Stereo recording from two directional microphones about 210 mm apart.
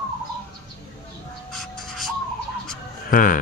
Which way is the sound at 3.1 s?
40° left (ahead or behind).